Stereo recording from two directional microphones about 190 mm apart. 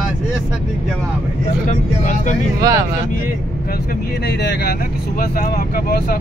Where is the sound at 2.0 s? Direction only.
40° left (ahead or behind).